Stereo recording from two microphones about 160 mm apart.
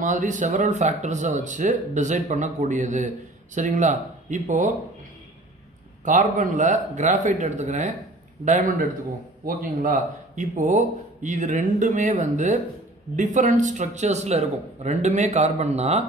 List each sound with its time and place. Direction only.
0.0 s speech: 50° right (ahead or behind)
6.0 s speech: 50° right (ahead or behind)
9.4 s speech: 65° right (ahead or behind); by 16.0 s 40° right (ahead or behind)